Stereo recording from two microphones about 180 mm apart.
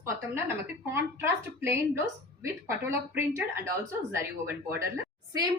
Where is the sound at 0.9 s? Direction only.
15° right (ahead or behind).